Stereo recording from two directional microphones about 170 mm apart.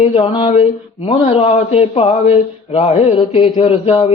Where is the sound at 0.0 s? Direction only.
40° left (ahead or behind).